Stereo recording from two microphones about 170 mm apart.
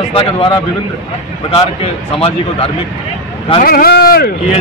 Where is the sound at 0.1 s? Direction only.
35° left (ahead or behind).